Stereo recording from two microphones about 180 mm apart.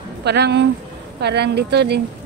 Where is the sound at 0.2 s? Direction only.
70° right (ahead or behind).